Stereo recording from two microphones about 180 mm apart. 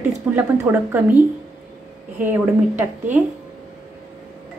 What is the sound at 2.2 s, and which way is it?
Speech, 10° right (ahead or behind).